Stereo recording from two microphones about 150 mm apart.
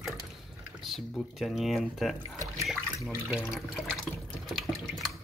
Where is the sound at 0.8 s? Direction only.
Centre (ahead or behind).